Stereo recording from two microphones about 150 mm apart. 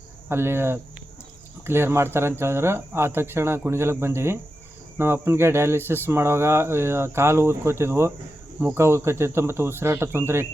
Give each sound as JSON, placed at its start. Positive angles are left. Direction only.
{"t": 0.3, "sound": "speech", "side_deg": -15}